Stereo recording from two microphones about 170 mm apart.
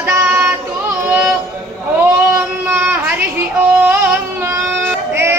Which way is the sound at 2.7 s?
10° right (ahead or behind).